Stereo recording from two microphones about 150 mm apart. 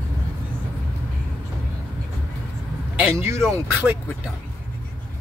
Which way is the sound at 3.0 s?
15° right (ahead or behind).